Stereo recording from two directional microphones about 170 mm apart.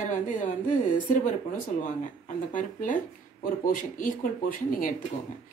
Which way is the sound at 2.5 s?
50° left (ahead or behind).